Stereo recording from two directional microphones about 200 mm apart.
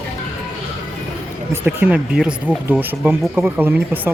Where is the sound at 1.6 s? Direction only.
10° right (ahead or behind).